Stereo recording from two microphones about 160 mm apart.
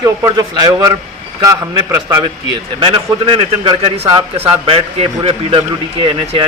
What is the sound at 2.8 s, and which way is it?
A man's voice, 30° right (ahead or behind).